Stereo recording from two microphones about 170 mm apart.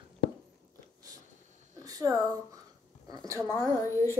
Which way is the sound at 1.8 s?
20° right (ahead or behind).